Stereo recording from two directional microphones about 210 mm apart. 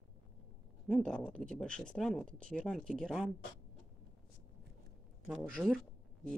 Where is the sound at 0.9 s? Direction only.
5° left (ahead or behind).